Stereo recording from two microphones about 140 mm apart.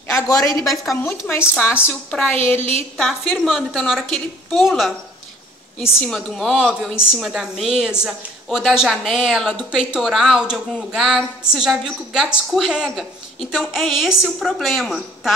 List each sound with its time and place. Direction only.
0.1 s a woman's voice: 20° left (ahead or behind)
2.4 s a woman's voice: 10° left (ahead or behind)
3.0 s a woman's voice: centre (ahead or behind)